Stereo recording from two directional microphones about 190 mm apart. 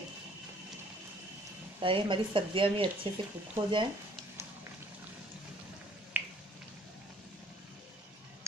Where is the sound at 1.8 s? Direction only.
25° right (ahead or behind).